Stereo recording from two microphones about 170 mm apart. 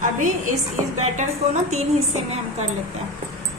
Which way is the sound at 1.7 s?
40° right (ahead or behind).